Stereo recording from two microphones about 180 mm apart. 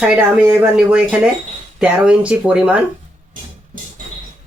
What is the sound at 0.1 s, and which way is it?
Speech, 10° right (ahead or behind).